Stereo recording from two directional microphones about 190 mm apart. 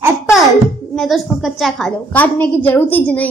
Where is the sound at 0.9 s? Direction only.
Centre (ahead or behind).